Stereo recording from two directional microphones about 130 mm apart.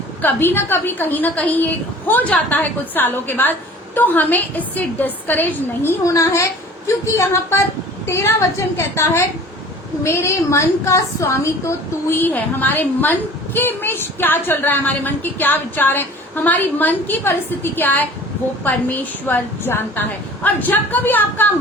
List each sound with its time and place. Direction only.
0.2 s a woman's voice: 15° left (ahead or behind)